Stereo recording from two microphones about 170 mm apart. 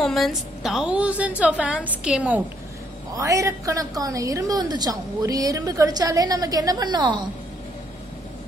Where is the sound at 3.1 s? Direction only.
20° right (ahead or behind).